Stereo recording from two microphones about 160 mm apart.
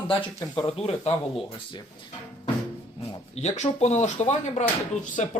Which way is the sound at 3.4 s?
45° left (ahead or behind).